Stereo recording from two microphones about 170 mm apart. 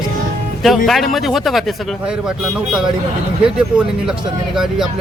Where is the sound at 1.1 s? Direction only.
Centre (ahead or behind).